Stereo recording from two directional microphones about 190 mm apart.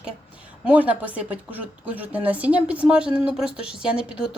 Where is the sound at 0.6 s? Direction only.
5° right (ahead or behind).